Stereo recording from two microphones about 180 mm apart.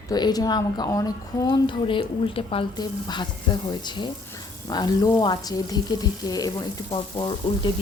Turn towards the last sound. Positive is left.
turn(degrees=25)  # may be behind; listen again after turning